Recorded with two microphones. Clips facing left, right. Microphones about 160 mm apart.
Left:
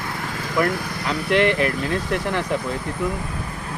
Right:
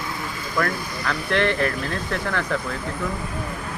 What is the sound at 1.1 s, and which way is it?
Speech, 15° left (ahead or behind).